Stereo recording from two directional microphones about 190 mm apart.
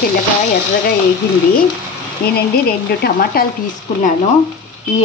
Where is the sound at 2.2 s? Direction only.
55° left (ahead or behind).